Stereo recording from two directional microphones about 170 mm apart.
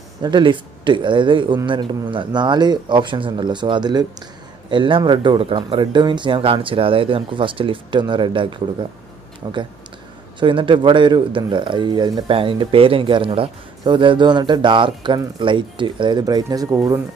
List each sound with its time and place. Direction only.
0.2 s speech: 25° right (ahead or behind)